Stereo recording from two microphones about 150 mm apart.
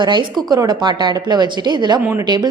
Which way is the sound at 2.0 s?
10° right (ahead or behind).